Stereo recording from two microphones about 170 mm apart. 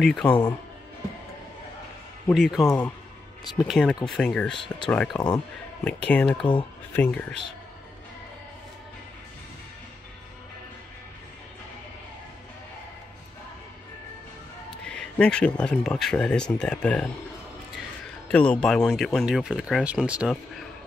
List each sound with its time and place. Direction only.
0.0 s speech: 5° left (ahead or behind)
2.3 s speech: centre (ahead or behind)
5.1 s speech: 25° left (ahead or behind)
5.9 s speech: 5° left (ahead or behind)
14.9 s speech: 5° left (ahead or behind)
18.3 s speech: 5° left (ahead or behind)